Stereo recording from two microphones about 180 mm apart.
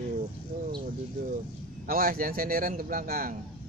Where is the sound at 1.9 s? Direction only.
50° right (ahead or behind).